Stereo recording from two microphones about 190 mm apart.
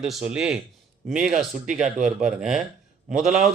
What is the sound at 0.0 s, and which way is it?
A man's voice, 5° right (ahead or behind).